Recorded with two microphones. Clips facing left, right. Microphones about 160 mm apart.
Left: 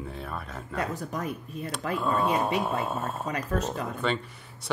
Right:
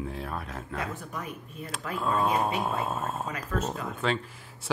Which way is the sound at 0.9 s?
40° left (ahead or behind).